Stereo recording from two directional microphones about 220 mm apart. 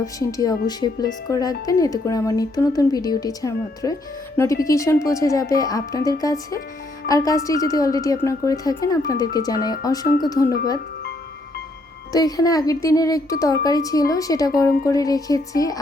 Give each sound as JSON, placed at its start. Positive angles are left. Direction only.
{"t": 0.0, "sound": "a woman's voice", "side_deg": 15}
{"t": 12.1, "sound": "a woman's voice", "side_deg": 15}